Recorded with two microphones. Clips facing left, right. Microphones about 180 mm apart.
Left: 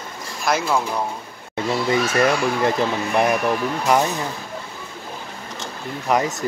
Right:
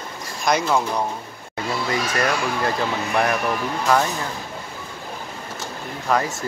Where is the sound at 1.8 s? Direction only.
20° left (ahead or behind).